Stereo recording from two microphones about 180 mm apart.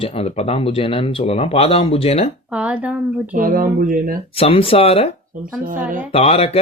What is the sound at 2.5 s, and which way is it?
Speech, 5° right (ahead or behind).